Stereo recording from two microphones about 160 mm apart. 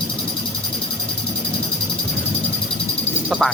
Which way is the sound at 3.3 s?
Centre (ahead or behind).